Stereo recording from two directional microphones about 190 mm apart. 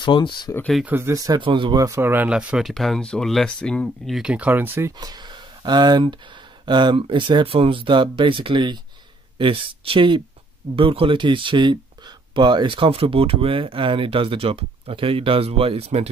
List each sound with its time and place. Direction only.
0.0 s speech: 25° left (ahead or behind)
0.5 s speech: 5° left (ahead or behind)
0.8 s speech: 10° right (ahead or behind)
4.9 s speech: 20° right (ahead or behind)